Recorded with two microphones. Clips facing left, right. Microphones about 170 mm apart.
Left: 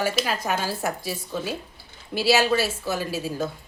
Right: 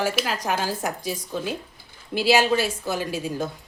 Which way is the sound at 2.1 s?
15° right (ahead or behind).